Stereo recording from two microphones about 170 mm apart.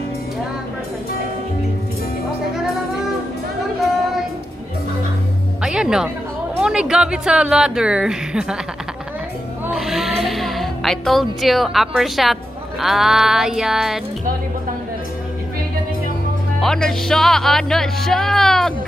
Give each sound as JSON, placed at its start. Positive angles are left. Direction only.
{"t": 5.6, "sound": "music", "side_deg": -5}
{"t": 6.6, "sound": "speech", "side_deg": -5}
{"t": 9.7, "sound": "music", "side_deg": 0}
{"t": 12.8, "sound": "speech", "side_deg": 0}
{"t": 16.6, "sound": "speech", "side_deg": 5}